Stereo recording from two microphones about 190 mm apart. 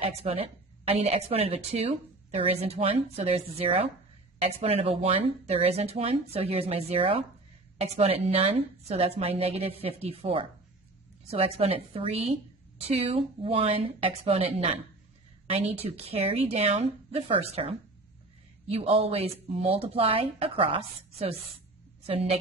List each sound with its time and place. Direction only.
0.0 s a woman's voice: 30° right (ahead or behind)
15.8 s a woman's voice: 30° right (ahead or behind)
18.8 s a woman's voice: 30° right (ahead or behind)